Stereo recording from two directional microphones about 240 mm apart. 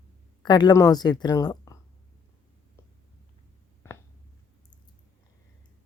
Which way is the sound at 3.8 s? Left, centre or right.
Centre.